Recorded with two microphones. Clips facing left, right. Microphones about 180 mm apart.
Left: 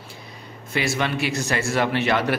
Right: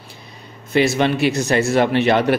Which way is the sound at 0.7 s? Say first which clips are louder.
Right 8 dB; 25° right (ahead or behind).